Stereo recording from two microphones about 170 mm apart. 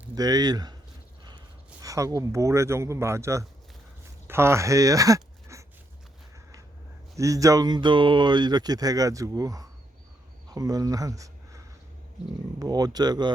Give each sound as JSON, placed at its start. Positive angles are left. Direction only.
{"t": 0.2, "sound": "speech", "side_deg": -20}
{"t": 1.8, "sound": "speech", "side_deg": -20}
{"t": 7.2, "sound": "speech", "side_deg": -20}